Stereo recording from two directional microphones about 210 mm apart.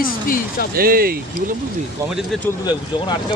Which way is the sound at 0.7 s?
45° right (ahead or behind).